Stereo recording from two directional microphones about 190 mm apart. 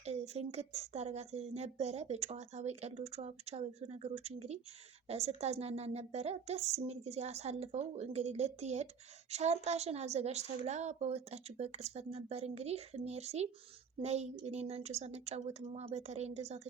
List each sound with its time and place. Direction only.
0.0 s speech: 35° right (ahead or behind)